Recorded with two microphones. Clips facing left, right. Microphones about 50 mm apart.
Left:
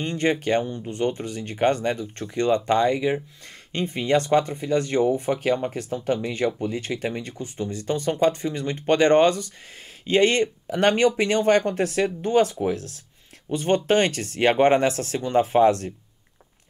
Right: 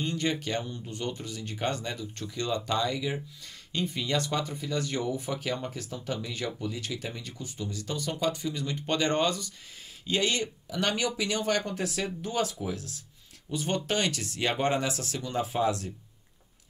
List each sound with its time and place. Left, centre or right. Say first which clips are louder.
0.0 s speech: left 7 dB; left